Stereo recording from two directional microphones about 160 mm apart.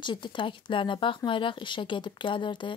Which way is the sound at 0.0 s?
30° left (ahead or behind).